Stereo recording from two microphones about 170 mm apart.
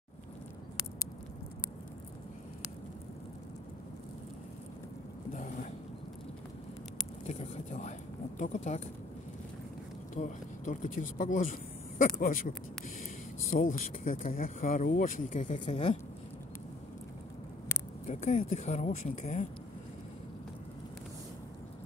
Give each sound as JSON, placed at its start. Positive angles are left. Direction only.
{"t": 5.3, "sound": "boat", "side_deg": 50}
{"t": 7.2, "sound": "a sound", "side_deg": 40}
{"t": 8.4, "sound": "speech", "side_deg": 45}
{"t": 10.1, "sound": "speech", "side_deg": 45}
{"t": 18.0, "sound": "speech", "side_deg": 45}